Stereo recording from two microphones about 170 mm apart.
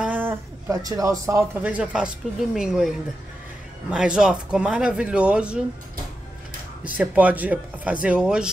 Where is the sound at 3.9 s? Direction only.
5° right (ahead or behind).